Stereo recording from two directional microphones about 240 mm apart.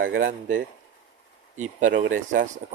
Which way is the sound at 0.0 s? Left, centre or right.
Right.